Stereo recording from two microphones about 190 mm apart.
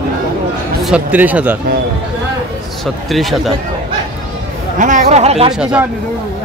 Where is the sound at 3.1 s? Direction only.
Centre (ahead or behind).